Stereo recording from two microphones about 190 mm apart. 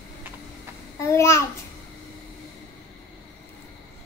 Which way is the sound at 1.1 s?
15° left (ahead or behind).